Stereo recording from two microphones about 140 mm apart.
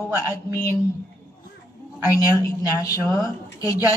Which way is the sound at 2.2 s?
25° left (ahead or behind).